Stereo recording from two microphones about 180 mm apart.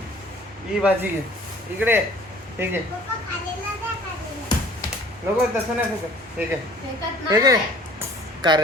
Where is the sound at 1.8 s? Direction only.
10° right (ahead or behind).